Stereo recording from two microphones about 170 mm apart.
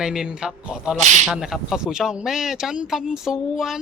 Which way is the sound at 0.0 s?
5° right (ahead or behind).